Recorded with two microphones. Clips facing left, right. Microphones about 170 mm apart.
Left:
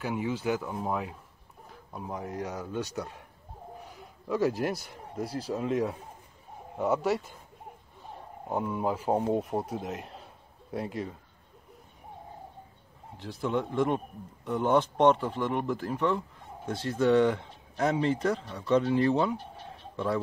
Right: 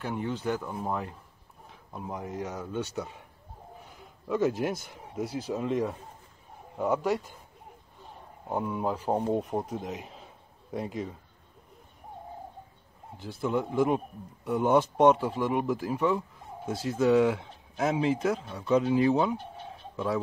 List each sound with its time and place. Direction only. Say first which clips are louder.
0.0 s speech: left 1 dB; 5° left (ahead or behind)
8.5 s a man's voice: even; centre (ahead or behind)
13.2 s speech: right 1 dB; centre (ahead or behind)